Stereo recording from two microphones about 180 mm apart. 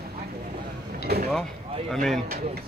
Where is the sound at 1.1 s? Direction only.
60° right (ahead or behind).